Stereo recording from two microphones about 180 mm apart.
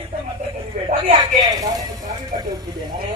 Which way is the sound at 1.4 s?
20° right (ahead or behind).